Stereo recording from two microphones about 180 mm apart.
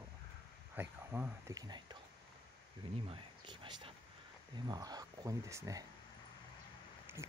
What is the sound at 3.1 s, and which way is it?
Speech, 30° right (ahead or behind).